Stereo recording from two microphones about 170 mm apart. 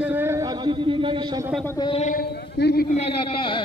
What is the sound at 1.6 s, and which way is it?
Speech, 25° left (ahead or behind).